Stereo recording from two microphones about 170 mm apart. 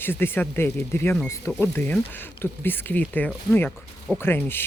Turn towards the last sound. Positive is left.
turn(degrees=15)  # may be behind; listen again after turning